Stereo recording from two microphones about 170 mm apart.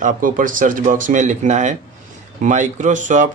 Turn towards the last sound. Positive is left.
turn(degrees=-45)  # may be behind; listen again after turning